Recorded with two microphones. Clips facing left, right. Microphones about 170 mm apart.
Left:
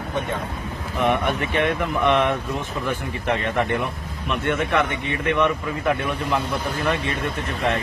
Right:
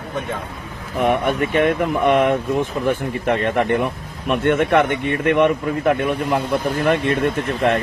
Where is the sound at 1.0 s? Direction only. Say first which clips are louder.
Right 4 dB; 45° right (ahead or behind).